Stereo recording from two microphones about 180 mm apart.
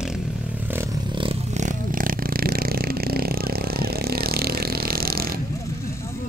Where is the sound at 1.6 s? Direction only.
50° right (ahead or behind).